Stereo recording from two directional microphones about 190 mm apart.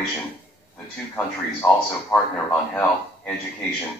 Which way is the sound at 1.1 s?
10° left (ahead or behind).